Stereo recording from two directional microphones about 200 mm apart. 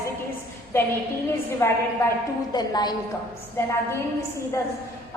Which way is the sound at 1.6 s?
10° left (ahead or behind).